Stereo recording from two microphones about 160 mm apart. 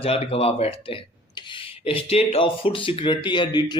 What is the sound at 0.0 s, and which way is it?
Speech, 35° left (ahead or behind).